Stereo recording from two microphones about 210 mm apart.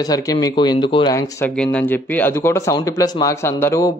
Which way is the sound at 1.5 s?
5° left (ahead or behind).